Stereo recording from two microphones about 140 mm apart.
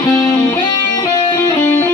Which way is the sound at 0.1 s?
30° left (ahead or behind).